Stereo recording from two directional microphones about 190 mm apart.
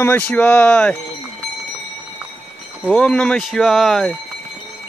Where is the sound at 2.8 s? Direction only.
5° left (ahead or behind).